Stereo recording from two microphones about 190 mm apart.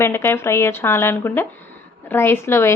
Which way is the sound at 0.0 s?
10° left (ahead or behind).